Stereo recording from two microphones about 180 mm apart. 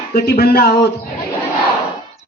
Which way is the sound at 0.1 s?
60° left (ahead or behind).